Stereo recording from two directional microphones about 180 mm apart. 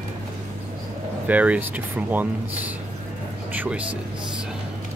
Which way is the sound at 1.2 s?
10° right (ahead or behind).